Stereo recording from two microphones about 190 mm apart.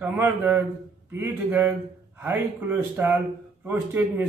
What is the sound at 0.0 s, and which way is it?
A man's voice, 10° right (ahead or behind).